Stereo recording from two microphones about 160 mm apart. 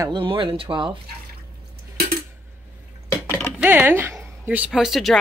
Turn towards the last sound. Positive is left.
turn(degrees=0)  # may be behind; listen again after turning